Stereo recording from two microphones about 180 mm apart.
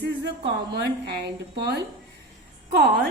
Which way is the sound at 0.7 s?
65° right (ahead or behind).